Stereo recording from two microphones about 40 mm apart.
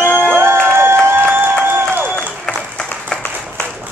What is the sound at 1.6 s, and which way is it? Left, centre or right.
Applause, right.